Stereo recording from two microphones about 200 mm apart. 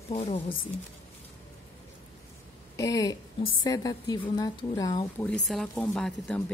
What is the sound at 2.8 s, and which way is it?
A woman's voice, 20° left (ahead or behind).